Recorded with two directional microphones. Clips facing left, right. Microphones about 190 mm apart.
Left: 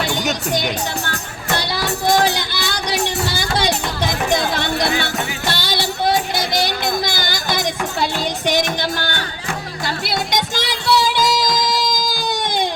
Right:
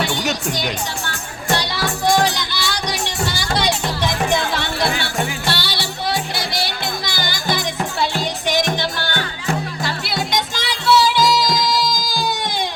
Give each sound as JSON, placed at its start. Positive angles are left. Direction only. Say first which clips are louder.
{"t": 0.2, "sound": "speech", "louder": "even", "side_deg": 0}
{"t": 2.0, "sound": "music", "louder": "left 1 dB", "side_deg": 50}
{"t": 4.4, "sound": "music", "louder": "left 2 dB", "side_deg": 45}
{"t": 8.4, "sound": "music", "louder": "left 1 dB", "side_deg": 45}